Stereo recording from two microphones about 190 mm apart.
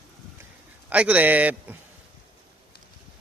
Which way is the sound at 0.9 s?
5° right (ahead or behind).